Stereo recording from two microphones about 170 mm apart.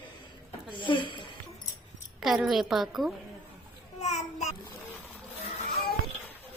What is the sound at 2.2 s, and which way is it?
Speech, centre (ahead or behind).